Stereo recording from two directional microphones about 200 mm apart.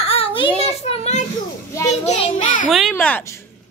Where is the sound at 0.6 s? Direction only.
30° left (ahead or behind).